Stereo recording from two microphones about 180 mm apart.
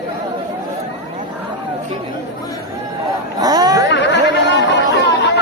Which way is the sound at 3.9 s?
75° left (ahead or behind).